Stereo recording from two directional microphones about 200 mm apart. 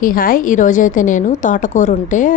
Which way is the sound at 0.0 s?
45° left (ahead or behind).